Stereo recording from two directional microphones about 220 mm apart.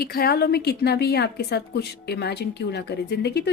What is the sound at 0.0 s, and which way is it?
Speech, 45° left (ahead or behind).